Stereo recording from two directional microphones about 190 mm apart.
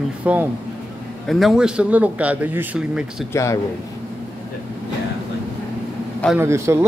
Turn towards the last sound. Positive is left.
turn(degrees=-15)  # may be behind; listen again after turning